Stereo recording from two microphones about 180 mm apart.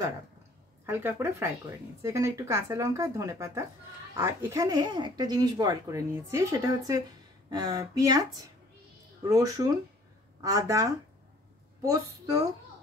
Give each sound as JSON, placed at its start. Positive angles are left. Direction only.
{"t": 0.8, "sound": "speech", "side_deg": -10}